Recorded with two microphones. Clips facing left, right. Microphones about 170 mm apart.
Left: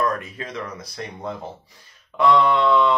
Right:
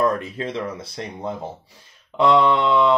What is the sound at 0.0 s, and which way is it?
Speech, 30° right (ahead or behind).